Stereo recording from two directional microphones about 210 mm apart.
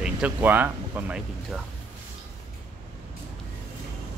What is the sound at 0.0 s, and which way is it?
Speech, 5° right (ahead or behind).